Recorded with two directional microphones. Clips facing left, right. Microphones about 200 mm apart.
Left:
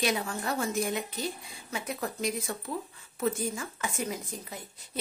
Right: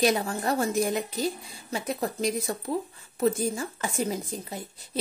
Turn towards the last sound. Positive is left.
turn(degrees=-30)  # may be behind; listen again after turning